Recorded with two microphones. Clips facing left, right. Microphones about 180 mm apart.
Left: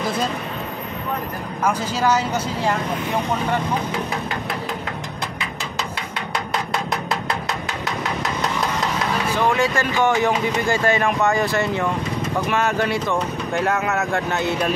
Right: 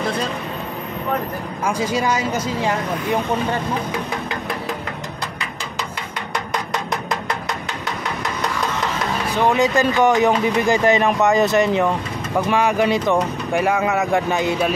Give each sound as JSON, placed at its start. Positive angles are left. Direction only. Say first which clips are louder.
{"t": 1.6, "sound": "speech", "louder": "even", "side_deg": -10}
{"t": 9.5, "sound": "speech", "louder": "right 3 dB", "side_deg": -20}